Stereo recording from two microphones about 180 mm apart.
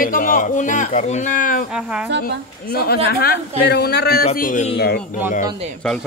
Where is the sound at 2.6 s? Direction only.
60° left (ahead or behind).